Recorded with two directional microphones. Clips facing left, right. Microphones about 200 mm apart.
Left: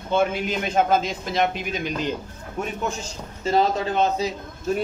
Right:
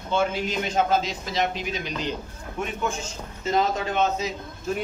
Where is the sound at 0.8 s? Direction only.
55° left (ahead or behind).